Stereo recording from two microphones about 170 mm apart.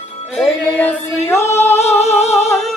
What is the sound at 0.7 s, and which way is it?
Singing, 15° left (ahead or behind).